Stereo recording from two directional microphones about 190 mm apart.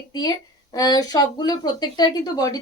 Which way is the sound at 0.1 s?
20° left (ahead or behind).